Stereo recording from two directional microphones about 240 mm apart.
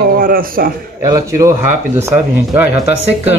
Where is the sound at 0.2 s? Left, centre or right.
Right.